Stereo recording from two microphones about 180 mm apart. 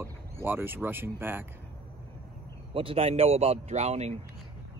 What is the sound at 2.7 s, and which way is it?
A man's voice, 30° right (ahead or behind).